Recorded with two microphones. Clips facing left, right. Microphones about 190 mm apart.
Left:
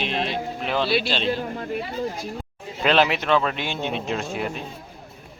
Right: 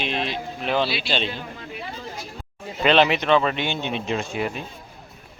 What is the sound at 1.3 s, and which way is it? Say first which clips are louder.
Speech: left 9 dB; 45° left (ahead or behind).